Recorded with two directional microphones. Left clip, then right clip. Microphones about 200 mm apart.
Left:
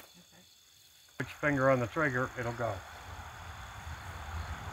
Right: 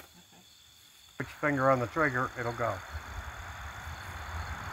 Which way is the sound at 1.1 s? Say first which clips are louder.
Right 1 dB; 20° left (ahead or behind).